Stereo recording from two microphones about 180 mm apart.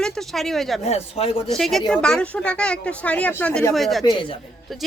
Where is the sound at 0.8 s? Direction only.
35° left (ahead or behind).